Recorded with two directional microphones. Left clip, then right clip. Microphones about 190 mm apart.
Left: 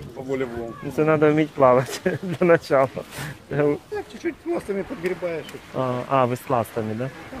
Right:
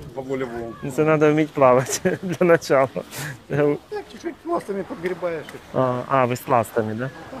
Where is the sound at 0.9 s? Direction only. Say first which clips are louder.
Right 1 dB; 30° right (ahead or behind).